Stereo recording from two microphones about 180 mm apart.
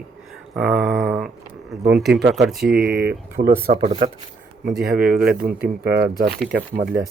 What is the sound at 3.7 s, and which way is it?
Speech, 35° right (ahead or behind).